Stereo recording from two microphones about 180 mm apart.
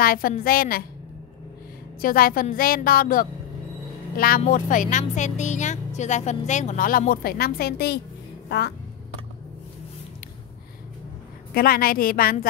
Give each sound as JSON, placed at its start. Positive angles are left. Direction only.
{"t": 0.0, "sound": "a woman's voice", "side_deg": 55}
{"t": 2.0, "sound": "speech", "side_deg": 55}
{"t": 4.4, "sound": "speech", "side_deg": 45}
{"t": 11.5, "sound": "a woman's voice", "side_deg": 55}